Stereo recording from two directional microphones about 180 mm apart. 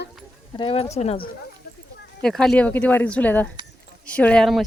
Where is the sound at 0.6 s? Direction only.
30° left (ahead or behind).